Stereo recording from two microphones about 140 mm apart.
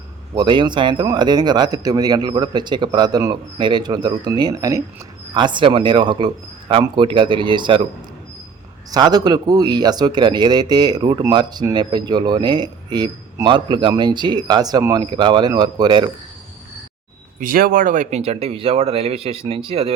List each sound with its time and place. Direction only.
0.3 s speech: 35° right (ahead or behind)
8.9 s speech: 30° right (ahead or behind)
17.4 s speech: 90° right; by 18.2 s 60° right (ahead or behind)
18.2 s speech: 45° right (ahead or behind)